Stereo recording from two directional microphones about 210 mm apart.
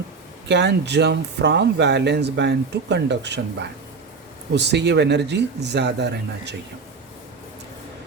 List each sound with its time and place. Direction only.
0.4 s speech: 55° right (ahead or behind)